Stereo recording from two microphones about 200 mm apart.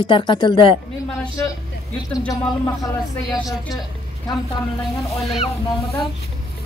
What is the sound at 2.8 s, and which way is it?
Speech, 20° left (ahead or behind).